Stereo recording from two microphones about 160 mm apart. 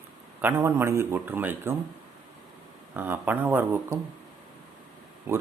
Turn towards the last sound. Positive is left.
turn(degrees=-15)  # may be behind; listen again after turning